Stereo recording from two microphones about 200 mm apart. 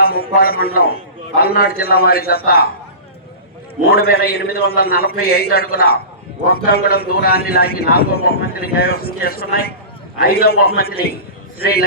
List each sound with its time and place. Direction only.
0.0 s a man's voice: 50° left (ahead or behind)
3.8 s a man's voice: 50° left (ahead or behind)